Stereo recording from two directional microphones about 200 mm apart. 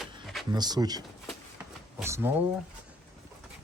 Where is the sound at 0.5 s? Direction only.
20° right (ahead or behind).